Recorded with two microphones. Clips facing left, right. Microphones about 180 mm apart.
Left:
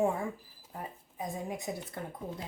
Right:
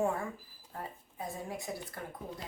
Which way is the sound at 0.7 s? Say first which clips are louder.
Left 1 dB; 15° left (ahead or behind).